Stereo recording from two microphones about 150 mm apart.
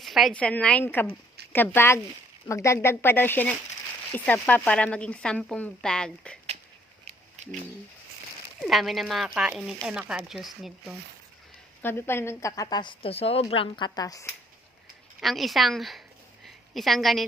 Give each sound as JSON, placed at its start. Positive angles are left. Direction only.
{"t": 0.0, "sound": "speech", "side_deg": 0}
{"t": 7.0, "sound": "a sound", "side_deg": -45}
{"t": 8.6, "sound": "speech", "side_deg": 0}
{"t": 11.8, "sound": "a woman's voice", "side_deg": 15}
{"t": 15.2, "sound": "speech", "side_deg": 0}